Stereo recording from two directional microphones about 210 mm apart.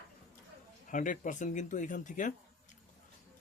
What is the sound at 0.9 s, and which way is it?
Speech, 40° left (ahead or behind).